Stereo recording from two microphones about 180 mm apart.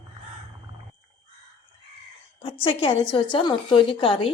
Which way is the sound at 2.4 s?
30° left (ahead or behind).